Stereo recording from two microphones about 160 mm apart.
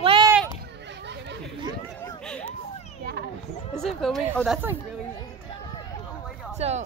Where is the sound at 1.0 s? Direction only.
90° right.